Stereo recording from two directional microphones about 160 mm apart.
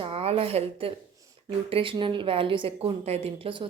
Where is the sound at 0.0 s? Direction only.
35° right (ahead or behind).